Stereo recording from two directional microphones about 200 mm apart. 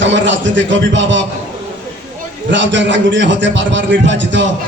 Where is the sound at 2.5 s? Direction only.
65° right (ahead or behind).